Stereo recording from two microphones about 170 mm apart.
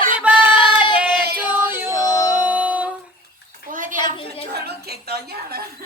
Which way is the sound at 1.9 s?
20° left (ahead or behind).